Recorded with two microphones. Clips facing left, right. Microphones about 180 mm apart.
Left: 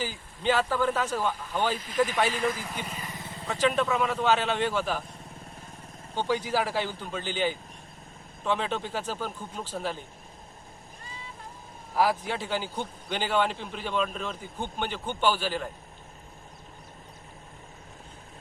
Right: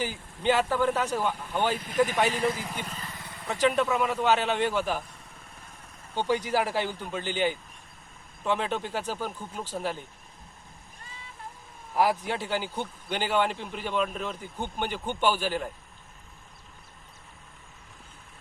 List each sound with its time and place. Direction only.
0.4 s speech: 15° right (ahead or behind)
1.7 s speech: 55° right (ahead or behind)
2.1 s speech: 15° right (ahead or behind)
2.7 s vehicle: 10° left (ahead or behind)
3.7 s speech: centre (ahead or behind)
4.2 s speech: 15° right (ahead or behind)
6.1 s speech: 15° right (ahead or behind)
11.9 s speech: 15° right (ahead or behind)